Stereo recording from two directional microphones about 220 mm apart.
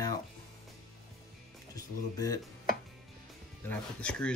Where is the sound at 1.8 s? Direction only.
15° left (ahead or behind).